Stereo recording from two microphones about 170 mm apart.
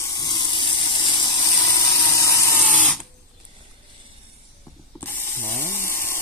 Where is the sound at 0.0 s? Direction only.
25° left (ahead or behind).